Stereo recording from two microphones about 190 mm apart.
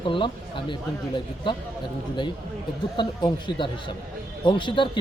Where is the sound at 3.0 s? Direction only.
25° left (ahead or behind).